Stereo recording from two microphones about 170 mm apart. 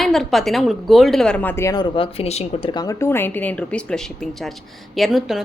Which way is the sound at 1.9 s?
35° left (ahead or behind).